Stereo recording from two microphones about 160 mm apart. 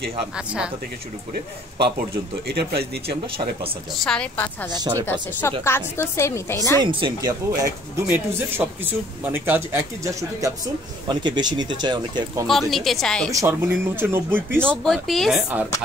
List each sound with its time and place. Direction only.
0.4 s speech: 5° right (ahead or behind)
1.8 s speech: 90° right
4.0 s a woman's voice: 5° left (ahead or behind)
4.7 s a man's voice: 25° right (ahead or behind)
5.4 s a woman's voice: 15° left (ahead or behind)
6.8 s a man's voice: 30° right (ahead or behind)
8.1 s a man's voice: 15° right (ahead or behind)
12.4 s a woman's voice: centre (ahead or behind)
13.3 s speech: 15° right (ahead or behind)
14.6 s a woman's voice: 5° left (ahead or behind)